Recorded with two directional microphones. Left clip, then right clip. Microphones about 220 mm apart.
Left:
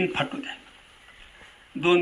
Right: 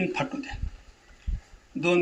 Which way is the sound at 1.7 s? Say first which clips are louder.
Left 2 dB; 50° right (ahead or behind).